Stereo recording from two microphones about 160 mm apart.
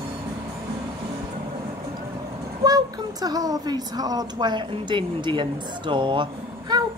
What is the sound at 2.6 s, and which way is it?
A woman's voice, 25° right (ahead or behind).